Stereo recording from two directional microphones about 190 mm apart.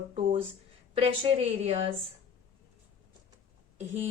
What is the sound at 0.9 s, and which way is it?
Speech, 30° right (ahead or behind).